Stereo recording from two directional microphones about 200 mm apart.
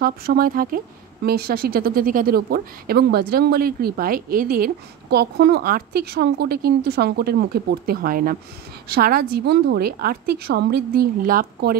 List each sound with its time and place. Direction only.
0.0 s a woman's voice: 50° right (ahead or behind)